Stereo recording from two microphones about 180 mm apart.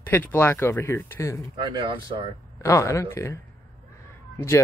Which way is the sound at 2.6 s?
15° left (ahead or behind).